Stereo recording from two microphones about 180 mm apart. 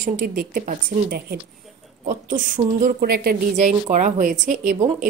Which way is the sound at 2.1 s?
45° right (ahead or behind).